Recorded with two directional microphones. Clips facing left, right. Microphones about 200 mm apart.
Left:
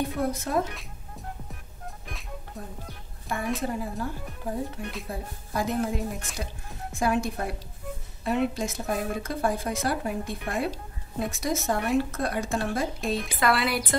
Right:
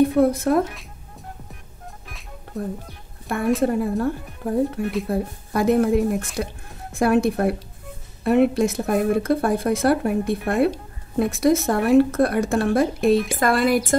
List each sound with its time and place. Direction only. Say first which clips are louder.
0.3 s speech: right 8 dB; 60° right (ahead or behind)
3.3 s speech: right 9 dB; 60° right (ahead or behind)
13.4 s a woman's voice: right 6 dB; 45° right (ahead or behind)